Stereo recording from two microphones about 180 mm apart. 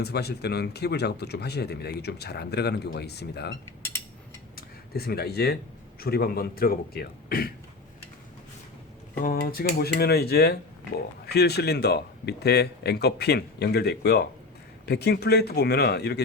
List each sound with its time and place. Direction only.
0.0 s a man's voice: 65° left (ahead or behind)
4.5 s a man's voice: 60° left (ahead or behind)
9.2 s a man's voice: 55° left (ahead or behind)